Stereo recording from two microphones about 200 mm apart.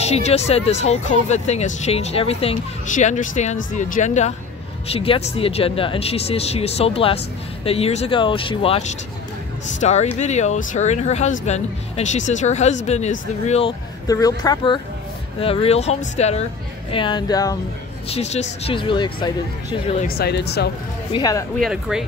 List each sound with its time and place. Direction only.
0.0 s speech: 30° left (ahead or behind)
14.0 s speech: 20° left (ahead or behind)
18.1 s speech: 35° left (ahead or behind)
20.0 s speech: 50° left (ahead or behind)
21.1 s speech: 20° left (ahead or behind)
21.5 s speech: centre (ahead or behind)